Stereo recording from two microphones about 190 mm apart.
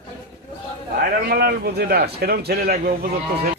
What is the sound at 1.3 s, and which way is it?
A man's voice, 55° right (ahead or behind).